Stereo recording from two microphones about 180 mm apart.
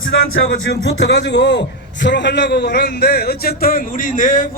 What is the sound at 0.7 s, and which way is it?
A man's voice, 70° left (ahead or behind).